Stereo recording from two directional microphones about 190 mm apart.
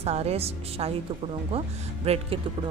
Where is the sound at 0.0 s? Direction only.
35° right (ahead or behind).